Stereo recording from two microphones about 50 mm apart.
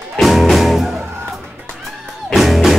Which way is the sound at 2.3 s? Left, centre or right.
Centre.